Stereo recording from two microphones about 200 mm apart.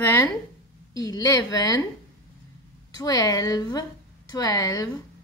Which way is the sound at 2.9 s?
15° left (ahead or behind).